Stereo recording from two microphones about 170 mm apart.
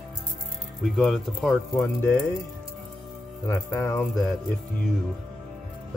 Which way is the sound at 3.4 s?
20° left (ahead or behind).